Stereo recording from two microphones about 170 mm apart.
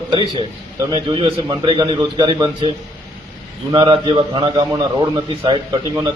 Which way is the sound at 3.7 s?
30° right (ahead or behind).